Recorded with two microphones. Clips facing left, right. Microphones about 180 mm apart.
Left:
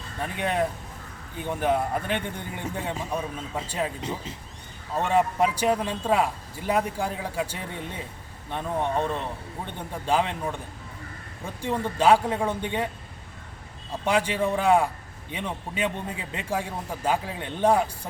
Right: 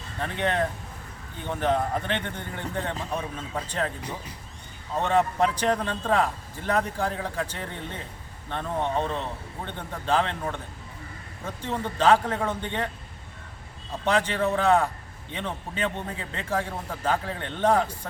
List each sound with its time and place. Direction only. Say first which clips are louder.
0.2 s a man's voice: even; 10° left (ahead or behind)
4.0 s speech: left 4 dB; 25° left (ahead or behind)
4.9 s a man's voice: even; 10° left (ahead or behind)
14.0 s a man's voice: even; 10° left (ahead or behind)